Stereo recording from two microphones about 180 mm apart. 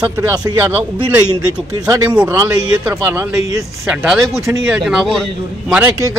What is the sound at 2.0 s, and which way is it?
Speech, 10° right (ahead or behind).